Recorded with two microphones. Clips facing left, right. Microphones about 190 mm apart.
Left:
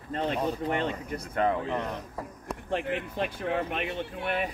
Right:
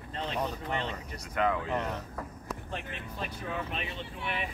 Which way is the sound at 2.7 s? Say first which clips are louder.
Left 9 dB; 75° left (ahead or behind).